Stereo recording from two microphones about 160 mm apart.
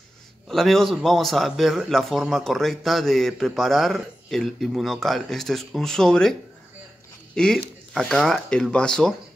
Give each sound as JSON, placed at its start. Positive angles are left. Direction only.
{"t": 0.5, "sound": "a man's voice", "side_deg": 0}
{"t": 7.3, "sound": "a man's voice", "side_deg": 5}